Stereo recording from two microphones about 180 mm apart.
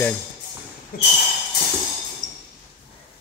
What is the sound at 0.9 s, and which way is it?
Speech, 55° left (ahead or behind).